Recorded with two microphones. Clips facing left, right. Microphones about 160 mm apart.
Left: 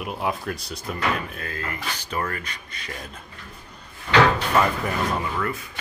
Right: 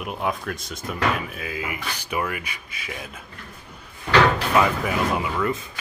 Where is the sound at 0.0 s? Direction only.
Centre (ahead or behind).